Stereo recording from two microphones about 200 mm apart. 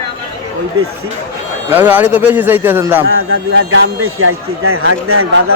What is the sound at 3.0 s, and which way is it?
Speech, 90° right.